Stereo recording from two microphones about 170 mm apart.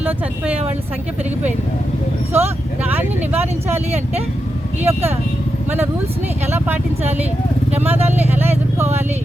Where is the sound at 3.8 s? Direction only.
40° right (ahead or behind).